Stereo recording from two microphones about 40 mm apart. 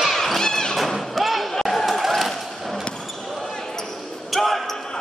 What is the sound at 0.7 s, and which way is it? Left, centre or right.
Music, centre.